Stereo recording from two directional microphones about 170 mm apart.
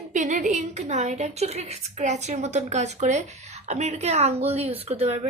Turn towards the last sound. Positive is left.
turn(degrees=-40)  # may be behind; listen again after turning